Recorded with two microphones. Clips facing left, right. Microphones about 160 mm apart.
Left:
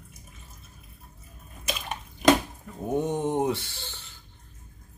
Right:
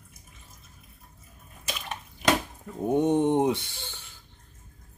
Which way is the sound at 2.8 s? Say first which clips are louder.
Right 4 dB; 15° right (ahead or behind).